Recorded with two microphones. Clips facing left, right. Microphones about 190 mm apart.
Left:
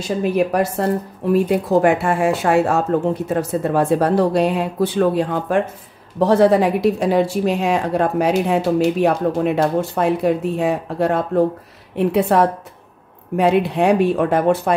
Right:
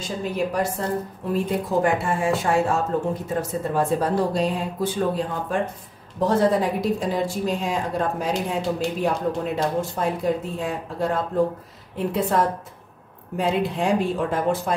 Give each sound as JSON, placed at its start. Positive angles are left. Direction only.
{"t": 0.0, "sound": "speech", "side_deg": 70}